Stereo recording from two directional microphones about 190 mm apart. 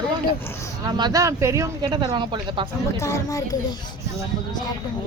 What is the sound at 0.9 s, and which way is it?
Speech, 20° right (ahead or behind).